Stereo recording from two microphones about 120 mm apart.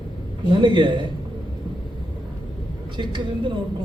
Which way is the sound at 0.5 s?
40° right (ahead or behind).